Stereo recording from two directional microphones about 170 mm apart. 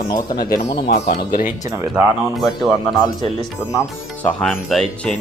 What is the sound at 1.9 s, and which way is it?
Speech, centre (ahead or behind).